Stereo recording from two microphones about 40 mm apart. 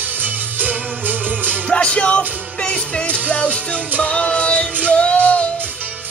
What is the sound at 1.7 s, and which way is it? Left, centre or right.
Music, left.